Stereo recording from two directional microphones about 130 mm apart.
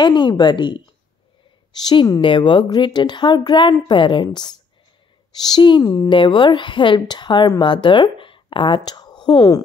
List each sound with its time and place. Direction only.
0.0 s a woman's voice: 35° left (ahead or behind)